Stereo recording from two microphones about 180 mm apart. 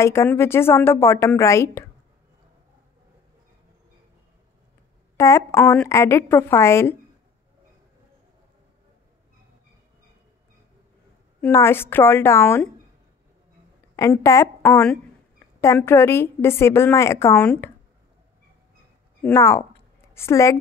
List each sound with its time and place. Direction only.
0.0 s a woman's voice: 15° left (ahead or behind)
5.1 s a woman's voice: 15° left (ahead or behind)
11.4 s a woman's voice: 15° left (ahead or behind)
13.9 s a woman's voice: 15° left (ahead or behind)
19.2 s a woman's voice: 15° left (ahead or behind)